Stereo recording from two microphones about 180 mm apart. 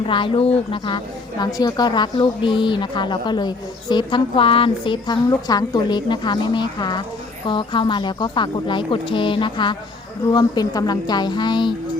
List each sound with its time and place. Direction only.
0.0 s a woman's voice: 30° left (ahead or behind)